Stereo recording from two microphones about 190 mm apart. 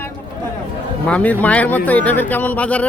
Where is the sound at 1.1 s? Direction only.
5° left (ahead or behind).